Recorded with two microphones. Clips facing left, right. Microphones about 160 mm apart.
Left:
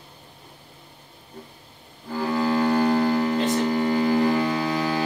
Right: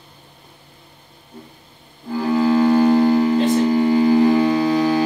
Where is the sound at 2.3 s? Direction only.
20° right (ahead or behind).